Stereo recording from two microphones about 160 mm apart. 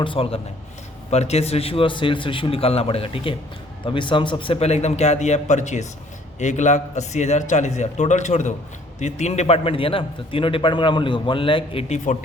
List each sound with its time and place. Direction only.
0.0 s a man's voice: 35° left (ahead or behind)